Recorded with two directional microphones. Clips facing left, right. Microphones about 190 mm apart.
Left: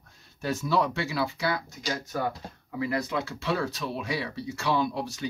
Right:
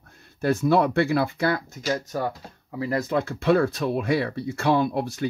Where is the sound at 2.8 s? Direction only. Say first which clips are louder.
Right 4 dB; 45° right (ahead or behind).